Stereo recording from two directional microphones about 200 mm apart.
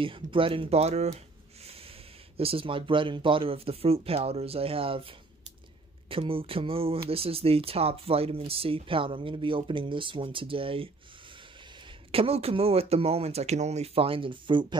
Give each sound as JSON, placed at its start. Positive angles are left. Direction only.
{"t": 0.0, "sound": "speech", "side_deg": -25}
{"t": 2.3, "sound": "speech", "side_deg": -25}
{"t": 12.1, "sound": "speech", "side_deg": -30}